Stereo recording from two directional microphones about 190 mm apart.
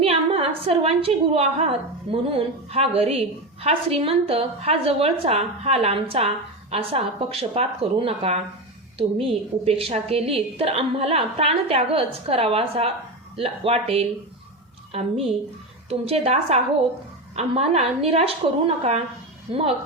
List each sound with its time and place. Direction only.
0.0 s a woman's voice: 30° right (ahead or behind)